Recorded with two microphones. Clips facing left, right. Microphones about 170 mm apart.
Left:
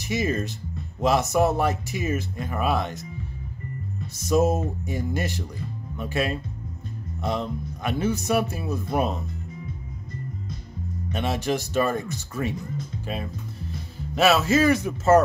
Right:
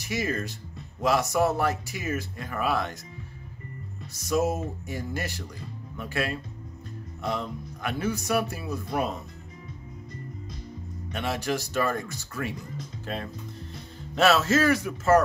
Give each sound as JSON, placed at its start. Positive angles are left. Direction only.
{"t": 0.0, "sound": "speech", "side_deg": 20}
{"t": 4.2, "sound": "speech", "side_deg": 20}
{"t": 11.1, "sound": "speech", "side_deg": 20}
{"t": 13.0, "sound": "speech", "side_deg": 10}